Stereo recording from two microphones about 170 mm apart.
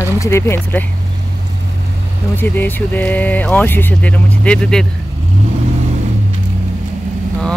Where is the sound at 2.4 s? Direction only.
10° left (ahead or behind).